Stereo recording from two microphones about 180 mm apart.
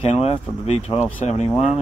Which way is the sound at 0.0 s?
35° left (ahead or behind).